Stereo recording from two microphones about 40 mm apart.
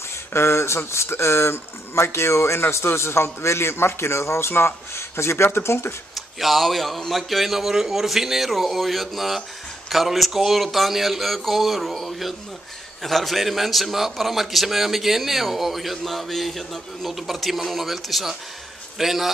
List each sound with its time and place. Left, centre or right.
0.3 s a man's voice: left
6.1 s a man's voice: centre